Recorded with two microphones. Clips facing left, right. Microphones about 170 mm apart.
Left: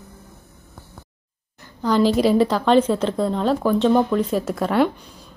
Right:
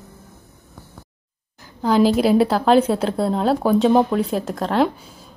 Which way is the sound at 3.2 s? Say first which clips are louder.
Right 1 dB; 40° right (ahead or behind).